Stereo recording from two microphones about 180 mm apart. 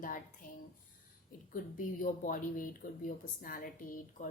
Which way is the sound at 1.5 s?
50° left (ahead or behind).